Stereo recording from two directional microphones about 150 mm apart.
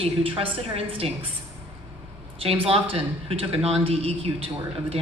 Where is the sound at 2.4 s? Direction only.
40° right (ahead or behind).